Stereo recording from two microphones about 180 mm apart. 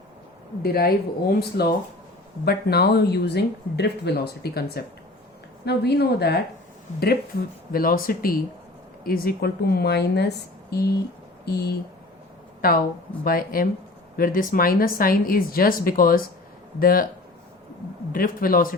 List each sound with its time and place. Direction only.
0.6 s speech: 60° left (ahead or behind)
7.7 s speech: 55° left (ahead or behind)
12.6 s speech: 55° left (ahead or behind)
18.1 s speech: 50° left (ahead or behind)